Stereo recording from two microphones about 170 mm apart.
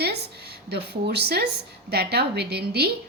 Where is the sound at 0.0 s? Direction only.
70° right (ahead or behind).